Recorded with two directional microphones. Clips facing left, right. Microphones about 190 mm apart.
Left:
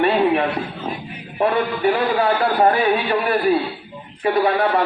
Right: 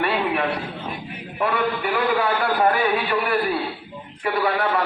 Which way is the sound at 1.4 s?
25° left (ahead or behind).